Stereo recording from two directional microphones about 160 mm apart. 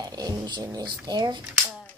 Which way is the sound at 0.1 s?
25° right (ahead or behind).